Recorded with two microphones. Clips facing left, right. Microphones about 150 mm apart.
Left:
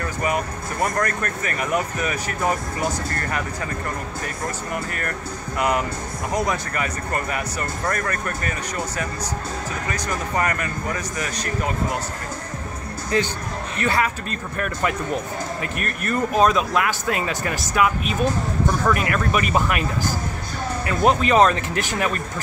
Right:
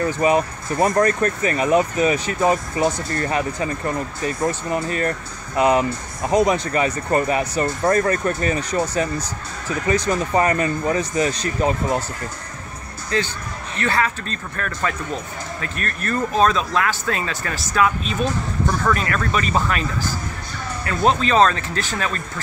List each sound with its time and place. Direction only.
0.0 s speech: 25° right (ahead or behind)
13.7 s speech: 15° left (ahead or behind)
21.2 s speech: 15° left (ahead or behind)